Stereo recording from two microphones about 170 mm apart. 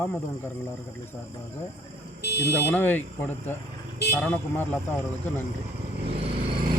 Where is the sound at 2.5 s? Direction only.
10° left (ahead or behind).